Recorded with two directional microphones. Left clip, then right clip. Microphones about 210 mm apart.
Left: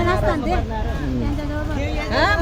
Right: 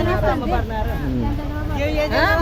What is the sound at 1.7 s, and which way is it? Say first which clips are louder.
Vehicle: right 10 dB; 30° right (ahead or behind).